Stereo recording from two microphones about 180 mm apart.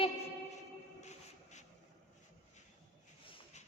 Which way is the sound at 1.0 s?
40° left (ahead or behind).